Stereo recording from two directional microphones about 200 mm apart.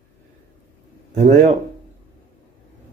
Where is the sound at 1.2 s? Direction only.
35° right (ahead or behind).